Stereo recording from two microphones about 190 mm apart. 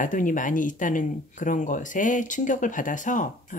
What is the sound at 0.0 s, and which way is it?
Speech, 45° left (ahead or behind).